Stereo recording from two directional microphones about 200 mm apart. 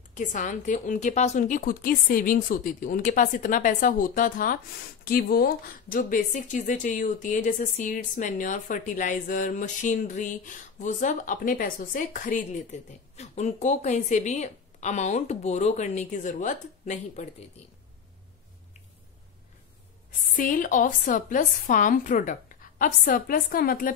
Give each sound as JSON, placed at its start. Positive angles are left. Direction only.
{"t": 0.1, "sound": "speech", "side_deg": 40}
{"t": 20.1, "sound": "speech", "side_deg": 40}